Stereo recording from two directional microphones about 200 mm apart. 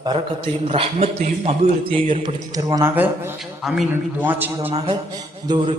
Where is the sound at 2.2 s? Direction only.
15° right (ahead or behind).